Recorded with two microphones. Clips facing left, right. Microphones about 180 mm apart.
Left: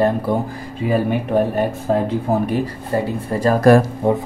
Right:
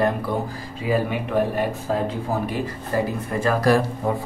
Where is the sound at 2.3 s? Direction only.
55° left (ahead or behind).